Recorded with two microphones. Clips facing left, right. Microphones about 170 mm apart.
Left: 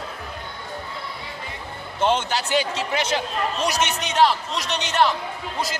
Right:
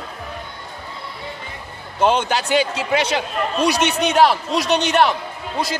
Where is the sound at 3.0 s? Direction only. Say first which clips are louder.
Right 3 dB; 65° right (ahead or behind).